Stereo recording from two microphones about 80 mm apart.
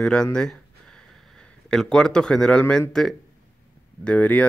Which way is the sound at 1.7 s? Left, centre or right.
Centre.